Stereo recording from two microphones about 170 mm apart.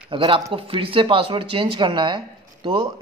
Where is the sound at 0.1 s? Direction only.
30° right (ahead or behind).